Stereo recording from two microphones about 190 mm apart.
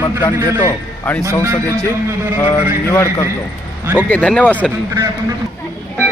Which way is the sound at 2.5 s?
15° left (ahead or behind).